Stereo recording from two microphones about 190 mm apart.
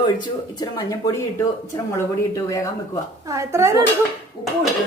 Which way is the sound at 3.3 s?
15° right (ahead or behind).